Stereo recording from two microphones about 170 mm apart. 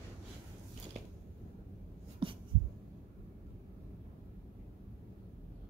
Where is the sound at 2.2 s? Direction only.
30° right (ahead or behind).